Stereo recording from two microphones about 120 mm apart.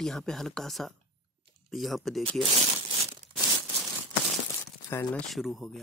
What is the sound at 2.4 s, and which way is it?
Crumpling, 50° right (ahead or behind).